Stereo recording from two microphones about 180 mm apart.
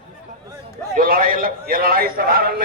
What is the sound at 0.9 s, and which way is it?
A man's voice, 50° right (ahead or behind).